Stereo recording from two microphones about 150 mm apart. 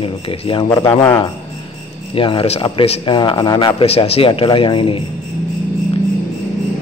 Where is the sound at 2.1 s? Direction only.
35° left (ahead or behind).